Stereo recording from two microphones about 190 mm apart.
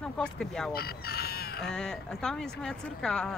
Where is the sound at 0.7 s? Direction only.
55° left (ahead or behind).